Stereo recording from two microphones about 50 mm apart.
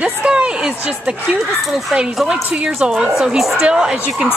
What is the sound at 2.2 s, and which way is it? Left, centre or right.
A woman's voice, centre.